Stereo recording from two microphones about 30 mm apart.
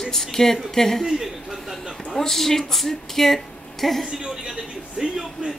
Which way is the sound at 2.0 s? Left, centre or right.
Centre.